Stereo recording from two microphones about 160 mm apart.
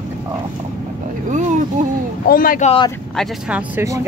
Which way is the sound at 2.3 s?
60° left (ahead or behind).